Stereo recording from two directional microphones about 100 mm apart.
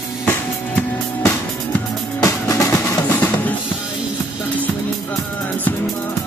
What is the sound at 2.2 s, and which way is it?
Music, 30° left (ahead or behind).